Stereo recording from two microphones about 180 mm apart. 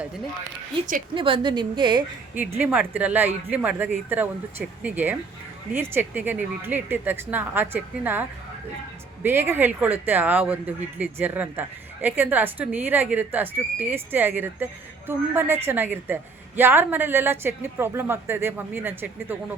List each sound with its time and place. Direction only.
1.1 s a woman's voice: 30° right (ahead or behind)
2.6 s speech: 10° right (ahead or behind)